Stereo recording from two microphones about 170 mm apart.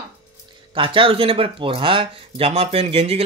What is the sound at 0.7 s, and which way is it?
Speech, 30° right (ahead or behind).